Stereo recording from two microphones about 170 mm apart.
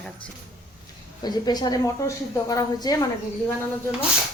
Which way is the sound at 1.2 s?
25° left (ahead or behind).